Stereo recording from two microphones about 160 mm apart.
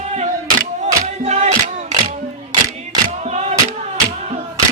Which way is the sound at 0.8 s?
45° right (ahead or behind).